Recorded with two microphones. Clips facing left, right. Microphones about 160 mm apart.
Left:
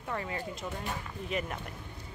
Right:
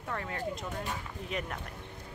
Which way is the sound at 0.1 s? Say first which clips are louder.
Left 2 dB; 5° left (ahead or behind).